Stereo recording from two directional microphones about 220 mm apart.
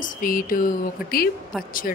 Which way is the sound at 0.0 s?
40° left (ahead or behind).